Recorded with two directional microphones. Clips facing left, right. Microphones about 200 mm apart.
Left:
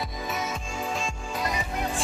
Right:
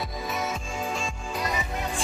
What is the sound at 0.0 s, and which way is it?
Music, centre (ahead or behind).